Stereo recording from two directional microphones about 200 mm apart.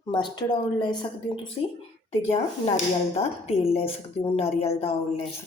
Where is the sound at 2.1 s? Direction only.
35° left (ahead or behind).